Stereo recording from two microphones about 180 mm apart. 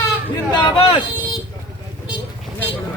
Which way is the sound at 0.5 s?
25° left (ahead or behind).